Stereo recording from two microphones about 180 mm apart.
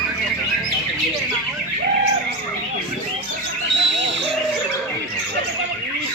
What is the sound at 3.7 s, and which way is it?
Owl, 90° right.